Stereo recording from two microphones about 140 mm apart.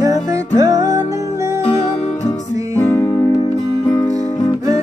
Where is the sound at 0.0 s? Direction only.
25° right (ahead or behind).